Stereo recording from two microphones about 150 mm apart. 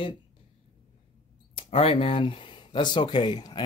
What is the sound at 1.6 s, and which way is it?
Speech, 40° left (ahead or behind).